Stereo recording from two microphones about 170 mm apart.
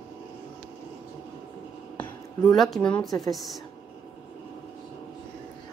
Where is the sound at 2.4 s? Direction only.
Centre (ahead or behind).